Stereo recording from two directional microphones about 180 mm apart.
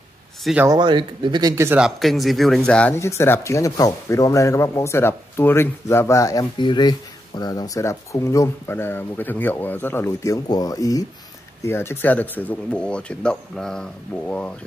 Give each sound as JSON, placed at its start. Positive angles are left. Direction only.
{"t": 0.4, "sound": "speech", "side_deg": 0}
{"t": 0.7, "sound": "speech", "side_deg": -25}
{"t": 1.8, "sound": "speech", "side_deg": 0}